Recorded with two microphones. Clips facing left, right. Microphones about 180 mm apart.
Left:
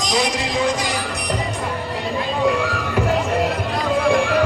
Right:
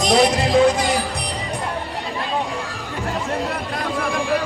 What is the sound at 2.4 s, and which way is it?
Run, 70° left (ahead or behind).